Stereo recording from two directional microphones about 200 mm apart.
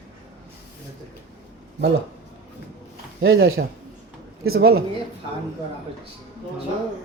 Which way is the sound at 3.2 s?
55° right (ahead or behind).